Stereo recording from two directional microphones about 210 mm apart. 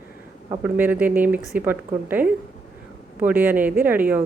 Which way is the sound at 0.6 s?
10° right (ahead or behind).